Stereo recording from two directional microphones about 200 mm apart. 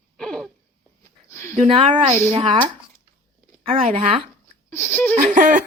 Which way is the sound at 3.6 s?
30° right (ahead or behind).